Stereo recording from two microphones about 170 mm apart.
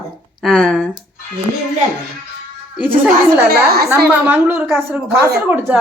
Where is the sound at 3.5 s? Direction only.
65° right (ahead or behind).